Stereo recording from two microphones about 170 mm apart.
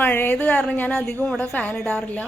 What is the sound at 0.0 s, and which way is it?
A woman's voice, 10° left (ahead or behind).